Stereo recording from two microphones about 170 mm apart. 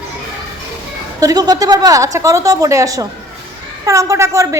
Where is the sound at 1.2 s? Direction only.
25° right (ahead or behind).